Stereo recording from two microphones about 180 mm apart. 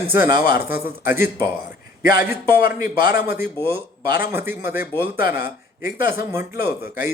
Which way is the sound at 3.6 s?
30° right (ahead or behind).